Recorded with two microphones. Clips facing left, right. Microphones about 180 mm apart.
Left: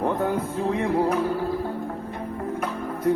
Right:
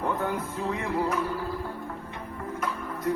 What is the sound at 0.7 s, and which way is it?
Music, 55° left (ahead or behind).